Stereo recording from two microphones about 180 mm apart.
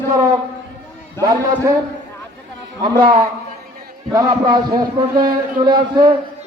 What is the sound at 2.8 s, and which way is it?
A man's voice, 25° right (ahead or behind).